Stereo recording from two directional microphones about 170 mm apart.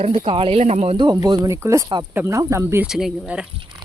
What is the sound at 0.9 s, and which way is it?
Speech, 25° right (ahead or behind).